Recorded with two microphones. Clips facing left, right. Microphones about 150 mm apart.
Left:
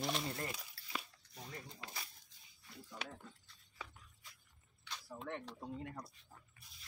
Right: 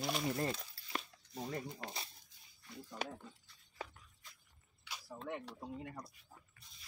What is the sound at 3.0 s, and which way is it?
Speech, 40° right (ahead or behind).